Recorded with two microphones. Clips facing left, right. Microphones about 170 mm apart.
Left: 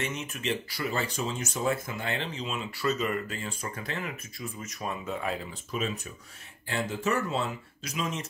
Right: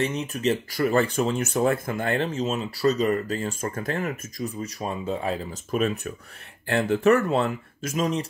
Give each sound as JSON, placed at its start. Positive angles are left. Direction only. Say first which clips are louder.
{"t": 0.0, "sound": "speech", "louder": "right 8 dB", "side_deg": -35}